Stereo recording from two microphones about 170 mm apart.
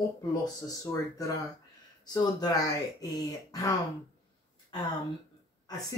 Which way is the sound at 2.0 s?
25° left (ahead or behind).